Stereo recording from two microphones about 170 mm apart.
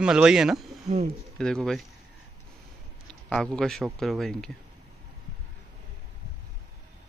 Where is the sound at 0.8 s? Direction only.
40° right (ahead or behind).